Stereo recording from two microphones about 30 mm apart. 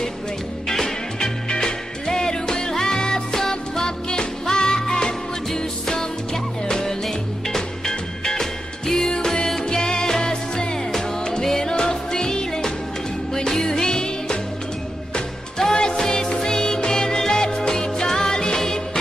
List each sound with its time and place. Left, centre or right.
0.7 s music: centre
15.5 s music: left